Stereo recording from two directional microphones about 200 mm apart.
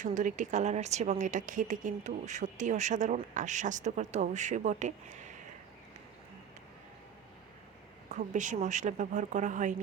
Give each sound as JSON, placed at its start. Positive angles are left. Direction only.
{"t": 0.0, "sound": "a woman's voice", "side_deg": -40}
{"t": 8.1, "sound": "a woman's voice", "side_deg": -40}